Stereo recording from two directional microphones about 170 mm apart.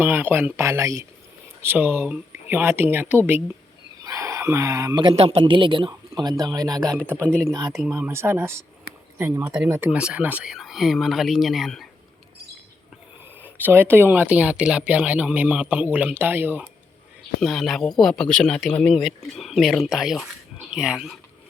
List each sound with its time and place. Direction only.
0.0 s speech: 10° right (ahead or behind)
7.2 s speech: 5° left (ahead or behind)
7.9 s speech: 15° right (ahead or behind)
13.4 s speech: 10° right (ahead or behind)
17.4 s speech: centre (ahead or behind)